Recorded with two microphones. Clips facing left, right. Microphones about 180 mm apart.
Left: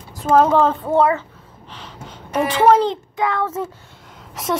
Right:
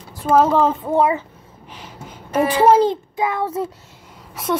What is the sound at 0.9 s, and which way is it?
Speech, 15° right (ahead or behind).